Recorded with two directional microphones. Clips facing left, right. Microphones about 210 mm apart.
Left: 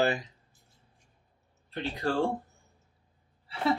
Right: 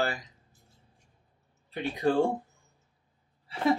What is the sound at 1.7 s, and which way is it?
Speech, 15° right (ahead or behind).